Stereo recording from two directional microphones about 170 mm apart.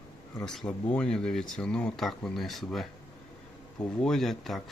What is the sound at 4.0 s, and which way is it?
Speech, 5° left (ahead or behind).